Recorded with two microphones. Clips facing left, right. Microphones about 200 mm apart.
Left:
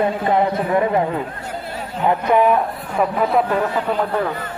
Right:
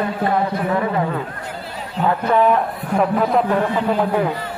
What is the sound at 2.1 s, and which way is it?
Speech, 15° left (ahead or behind).